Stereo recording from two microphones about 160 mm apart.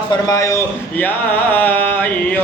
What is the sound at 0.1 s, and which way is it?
A man's voice, 20° left (ahead or behind).